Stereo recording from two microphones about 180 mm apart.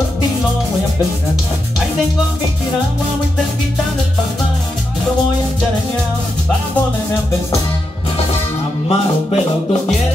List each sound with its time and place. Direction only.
8.8 s music: 35° left (ahead or behind)